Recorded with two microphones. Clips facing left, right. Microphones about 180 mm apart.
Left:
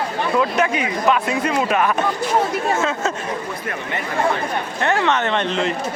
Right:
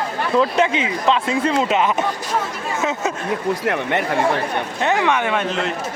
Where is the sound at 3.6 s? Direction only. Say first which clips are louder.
Right 6 dB; 65° right (ahead or behind).